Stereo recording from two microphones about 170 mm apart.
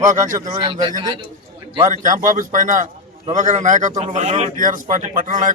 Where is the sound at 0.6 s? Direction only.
30° right (ahead or behind).